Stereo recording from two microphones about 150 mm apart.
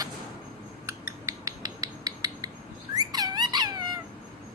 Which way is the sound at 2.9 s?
25° right (ahead or behind).